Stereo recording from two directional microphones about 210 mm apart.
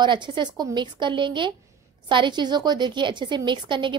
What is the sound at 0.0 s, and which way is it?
A woman's voice, 20° right (ahead or behind).